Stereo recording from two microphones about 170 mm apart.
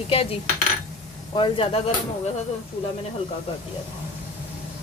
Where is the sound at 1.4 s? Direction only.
30° left (ahead or behind).